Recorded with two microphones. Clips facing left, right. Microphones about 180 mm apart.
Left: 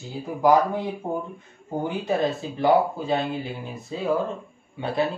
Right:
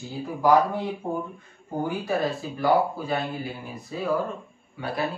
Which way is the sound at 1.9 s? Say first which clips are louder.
Left 3 dB; 20° left (ahead or behind).